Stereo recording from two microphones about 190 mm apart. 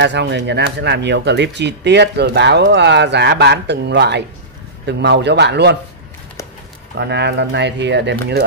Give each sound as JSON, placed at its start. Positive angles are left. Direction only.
{"t": 0.0, "sound": "speech", "side_deg": -65}
{"t": 7.0, "sound": "speech", "side_deg": -60}